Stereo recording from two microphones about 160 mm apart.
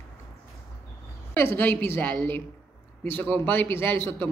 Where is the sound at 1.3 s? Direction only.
15° left (ahead or behind).